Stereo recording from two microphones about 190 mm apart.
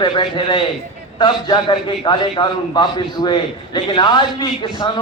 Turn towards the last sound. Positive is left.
turn(degrees=25)  # may be behind; listen again after turning